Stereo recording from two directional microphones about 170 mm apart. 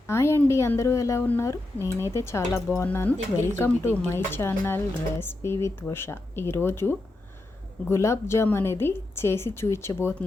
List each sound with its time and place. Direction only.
0.1 s speech: 15° left (ahead or behind)